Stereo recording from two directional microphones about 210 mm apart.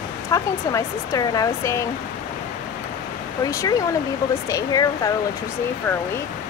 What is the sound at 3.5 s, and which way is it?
Speech, 15° left (ahead or behind).